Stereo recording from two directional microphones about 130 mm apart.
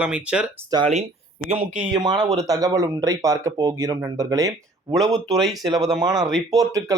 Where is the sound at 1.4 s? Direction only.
55° right (ahead or behind).